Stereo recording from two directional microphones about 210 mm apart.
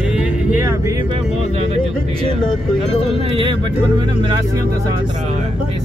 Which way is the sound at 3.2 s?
25° right (ahead or behind).